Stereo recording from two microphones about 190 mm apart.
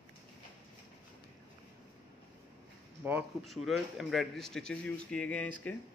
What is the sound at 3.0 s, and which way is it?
Speech, 10° right (ahead or behind).